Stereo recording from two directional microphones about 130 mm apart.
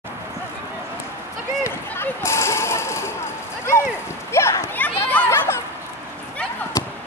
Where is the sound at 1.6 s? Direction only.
20° left (ahead or behind).